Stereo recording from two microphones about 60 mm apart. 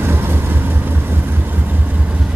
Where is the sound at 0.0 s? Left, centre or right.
Right.